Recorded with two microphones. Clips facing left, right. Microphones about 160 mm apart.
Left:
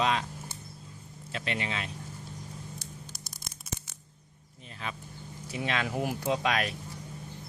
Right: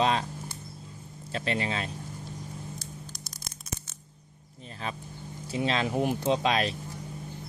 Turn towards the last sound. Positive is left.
turn(degrees=-25)  # may be behind; listen again after turning